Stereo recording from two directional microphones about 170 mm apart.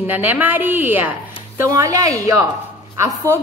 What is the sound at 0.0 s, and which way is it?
A woman's voice, 10° right (ahead or behind).